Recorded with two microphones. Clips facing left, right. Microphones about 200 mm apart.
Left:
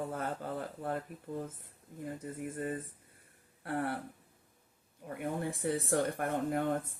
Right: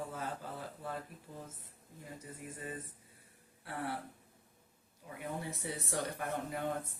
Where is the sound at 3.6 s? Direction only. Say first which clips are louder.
Left 5 dB; 55° left (ahead or behind).